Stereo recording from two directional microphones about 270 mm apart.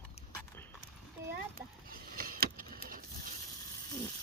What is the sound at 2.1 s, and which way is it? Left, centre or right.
Vehicle, right.